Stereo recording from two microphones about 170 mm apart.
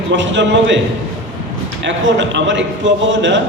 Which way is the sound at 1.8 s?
90° right.